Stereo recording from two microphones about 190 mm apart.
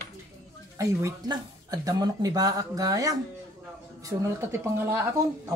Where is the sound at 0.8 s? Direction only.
20° right (ahead or behind).